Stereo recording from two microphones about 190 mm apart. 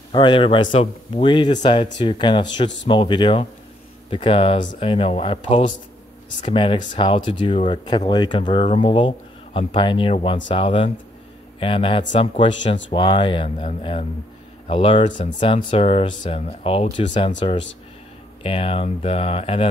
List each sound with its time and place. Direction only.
0.1 s speech: 25° left (ahead or behind)